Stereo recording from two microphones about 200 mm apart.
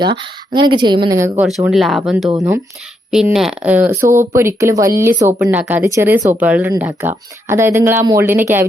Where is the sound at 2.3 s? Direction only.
15° right (ahead or behind).